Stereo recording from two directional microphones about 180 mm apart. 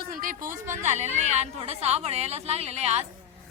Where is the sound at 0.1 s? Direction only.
50° right (ahead or behind).